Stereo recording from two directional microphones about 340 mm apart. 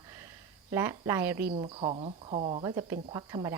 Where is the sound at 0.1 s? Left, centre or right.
Centre.